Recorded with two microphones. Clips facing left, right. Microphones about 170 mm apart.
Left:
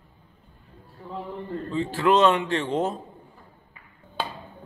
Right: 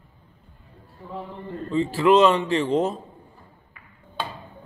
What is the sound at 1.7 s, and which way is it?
A man's voice, centre (ahead or behind).